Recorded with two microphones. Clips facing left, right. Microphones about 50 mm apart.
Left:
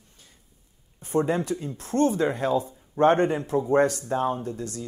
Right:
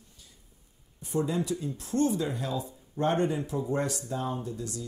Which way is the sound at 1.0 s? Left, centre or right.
Left.